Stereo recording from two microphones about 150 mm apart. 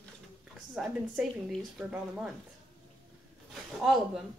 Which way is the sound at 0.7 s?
Centre (ahead or behind).